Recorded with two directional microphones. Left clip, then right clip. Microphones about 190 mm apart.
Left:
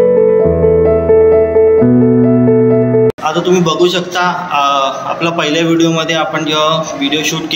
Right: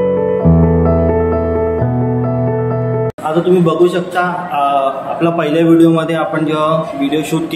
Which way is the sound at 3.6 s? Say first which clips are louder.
Even; 35° right (ahead or behind).